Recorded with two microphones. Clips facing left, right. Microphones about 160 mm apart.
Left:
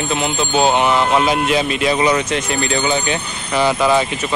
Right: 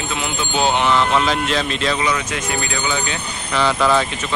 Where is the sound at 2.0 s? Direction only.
30° left (ahead or behind); by 4.1 s 15° left (ahead or behind).